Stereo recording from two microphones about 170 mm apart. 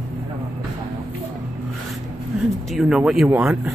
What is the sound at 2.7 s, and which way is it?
Speech, 5° right (ahead or behind).